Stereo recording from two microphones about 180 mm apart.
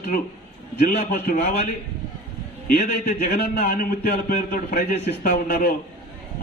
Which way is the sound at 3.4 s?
55° left (ahead or behind).